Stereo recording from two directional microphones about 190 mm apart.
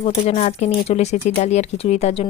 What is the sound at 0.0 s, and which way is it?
Speech, 35° left (ahead or behind).